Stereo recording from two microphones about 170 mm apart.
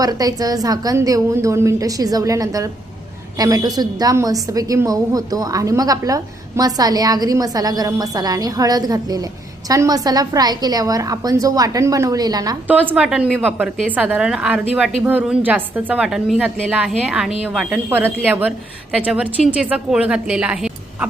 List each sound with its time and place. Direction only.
0.0 s a woman's voice: 20° right (ahead or behind)
12.6 s a woman's voice: 10° right (ahead or behind)